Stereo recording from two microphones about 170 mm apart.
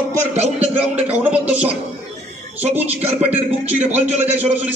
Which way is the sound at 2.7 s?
40° right (ahead or behind).